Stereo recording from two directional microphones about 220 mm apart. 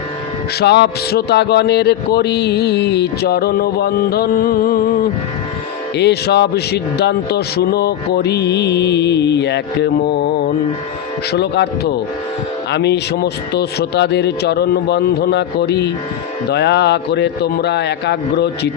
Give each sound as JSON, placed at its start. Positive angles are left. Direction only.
{"t": 0.6, "sound": "mantra", "side_deg": 50}
{"t": 6.0, "sound": "mantra", "side_deg": 50}